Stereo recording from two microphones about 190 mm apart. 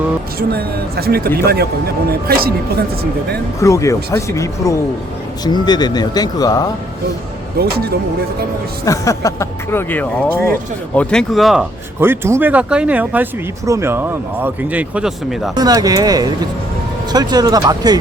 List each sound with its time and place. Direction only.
0.3 s speech: 55° right (ahead or behind)
3.6 s speech: 15° left (ahead or behind)
7.6 s speech: 55° right (ahead or behind)
8.8 s speech: 15° left (ahead or behind); by 11.6 s centre (ahead or behind)
11.9 s speech: 10° right (ahead or behind)
15.5 s speech: 20° right (ahead or behind)